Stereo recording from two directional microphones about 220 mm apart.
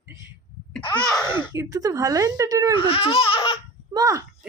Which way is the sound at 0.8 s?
20° left (ahead or behind).